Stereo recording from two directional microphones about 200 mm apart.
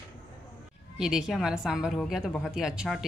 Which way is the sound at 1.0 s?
5° right (ahead or behind).